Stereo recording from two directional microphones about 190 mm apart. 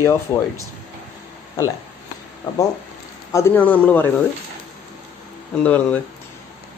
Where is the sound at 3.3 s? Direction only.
10° left (ahead or behind).